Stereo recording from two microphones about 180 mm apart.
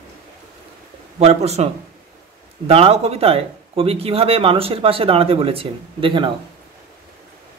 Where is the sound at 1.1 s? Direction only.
35° right (ahead or behind).